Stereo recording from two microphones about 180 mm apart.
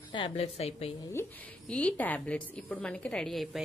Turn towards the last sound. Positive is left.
turn(degrees=0)  # may be behind; listen again after turning